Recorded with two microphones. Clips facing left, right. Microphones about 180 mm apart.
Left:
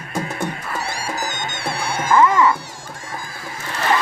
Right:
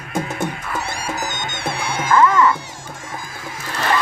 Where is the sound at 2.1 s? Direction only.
15° left (ahead or behind).